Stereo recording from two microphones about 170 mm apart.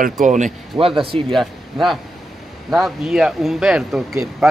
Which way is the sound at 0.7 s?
35° right (ahead or behind).